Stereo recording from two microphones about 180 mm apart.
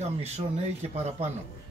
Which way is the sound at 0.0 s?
35° right (ahead or behind).